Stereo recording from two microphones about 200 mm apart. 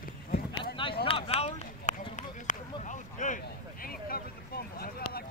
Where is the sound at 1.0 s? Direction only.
25° left (ahead or behind); by 5.2 s 50° left (ahead or behind).